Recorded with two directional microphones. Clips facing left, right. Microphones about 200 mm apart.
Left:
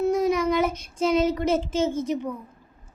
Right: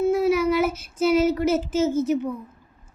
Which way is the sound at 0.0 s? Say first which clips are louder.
Right 2 dB; 5° right (ahead or behind).